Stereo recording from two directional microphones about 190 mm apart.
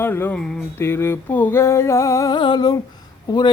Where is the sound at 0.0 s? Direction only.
10° left (ahead or behind).